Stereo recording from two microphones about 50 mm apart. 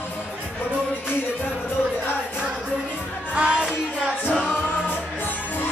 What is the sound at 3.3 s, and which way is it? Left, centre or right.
Music, right.